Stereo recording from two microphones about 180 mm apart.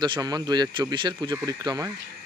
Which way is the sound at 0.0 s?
25° right (ahead or behind).